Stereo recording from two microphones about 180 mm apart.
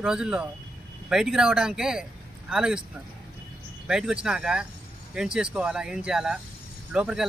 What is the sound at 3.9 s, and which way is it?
Speech, 5° right (ahead or behind).